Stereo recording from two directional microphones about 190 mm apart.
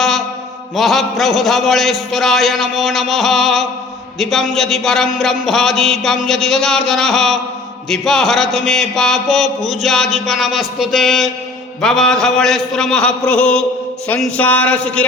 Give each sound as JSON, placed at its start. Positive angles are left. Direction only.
{"t": 0.8, "sound": "speech", "side_deg": 0}